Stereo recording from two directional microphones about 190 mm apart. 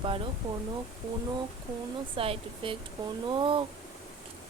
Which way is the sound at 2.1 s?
30° right (ahead or behind).